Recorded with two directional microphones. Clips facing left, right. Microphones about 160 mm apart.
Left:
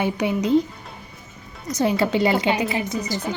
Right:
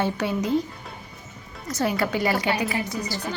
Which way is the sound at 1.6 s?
20° left (ahead or behind).